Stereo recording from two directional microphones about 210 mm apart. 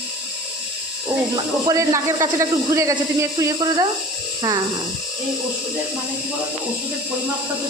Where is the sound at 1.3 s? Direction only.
15° right (ahead or behind).